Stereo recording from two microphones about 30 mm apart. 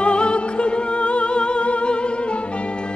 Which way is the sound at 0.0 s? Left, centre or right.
Left.